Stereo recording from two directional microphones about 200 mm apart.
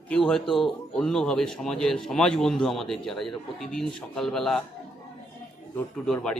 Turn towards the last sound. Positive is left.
turn(degrees=5)  # may be behind; listen again after turning